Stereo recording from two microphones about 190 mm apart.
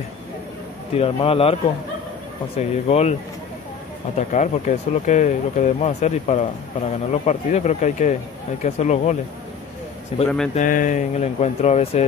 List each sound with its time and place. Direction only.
0.9 s speech: 30° left (ahead or behind)
4.3 s speech: 40° left (ahead or behind)
10.1 s speech: 30° left (ahead or behind)
10.5 s speech: 45° left (ahead or behind)